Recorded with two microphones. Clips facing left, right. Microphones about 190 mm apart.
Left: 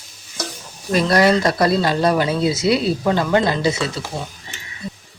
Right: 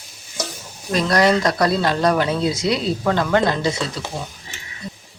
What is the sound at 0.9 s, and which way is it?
Speech, 5° left (ahead or behind).